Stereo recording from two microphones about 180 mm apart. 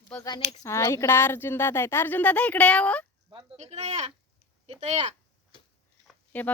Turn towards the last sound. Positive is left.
turn(degrees=10)  # may be behind; listen again after turning